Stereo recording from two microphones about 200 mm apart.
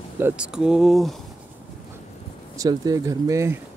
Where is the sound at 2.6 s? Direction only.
20° right (ahead or behind).